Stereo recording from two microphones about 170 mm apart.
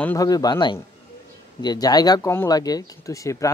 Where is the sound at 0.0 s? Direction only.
15° left (ahead or behind).